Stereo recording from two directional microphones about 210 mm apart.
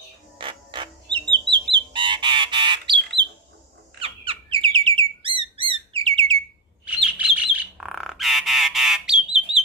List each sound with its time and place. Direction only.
0.4 s music: 25° right (ahead or behind)
4.0 s chirp: 25° right (ahead or behind)
7.1 s bird: 5° right (ahead or behind)